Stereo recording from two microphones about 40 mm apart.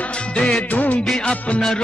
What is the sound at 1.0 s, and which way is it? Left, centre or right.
Music, centre.